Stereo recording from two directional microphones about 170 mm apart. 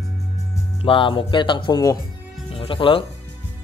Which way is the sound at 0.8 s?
30° left (ahead or behind).